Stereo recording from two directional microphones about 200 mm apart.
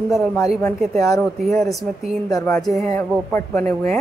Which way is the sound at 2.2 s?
15° left (ahead or behind).